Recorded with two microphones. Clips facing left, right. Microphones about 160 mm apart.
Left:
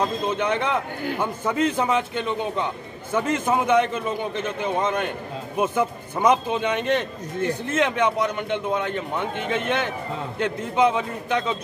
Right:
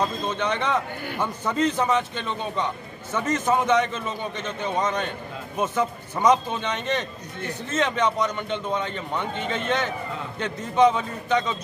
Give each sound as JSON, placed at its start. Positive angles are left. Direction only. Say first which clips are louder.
{"t": 0.0, "sound": "a man's voice", "louder": "left 2 dB", "side_deg": 10}